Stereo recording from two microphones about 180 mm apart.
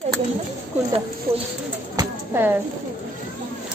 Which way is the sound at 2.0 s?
10° right (ahead or behind).